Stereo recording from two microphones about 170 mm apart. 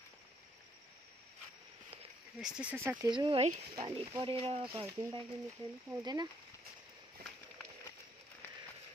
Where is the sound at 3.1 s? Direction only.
30° right (ahead or behind).